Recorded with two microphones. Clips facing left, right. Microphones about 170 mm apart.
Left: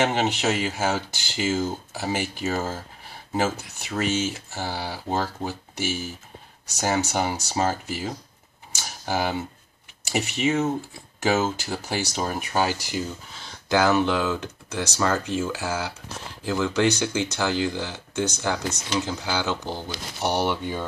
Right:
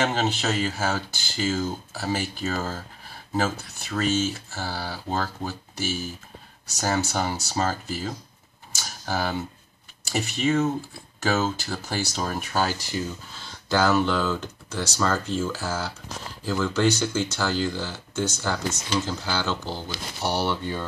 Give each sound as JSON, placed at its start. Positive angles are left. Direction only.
{"t": 0.0, "sound": "speech", "side_deg": 15}
{"t": 8.8, "sound": "computer keyboard", "side_deg": 15}
{"t": 10.1, "sound": "speech", "side_deg": 15}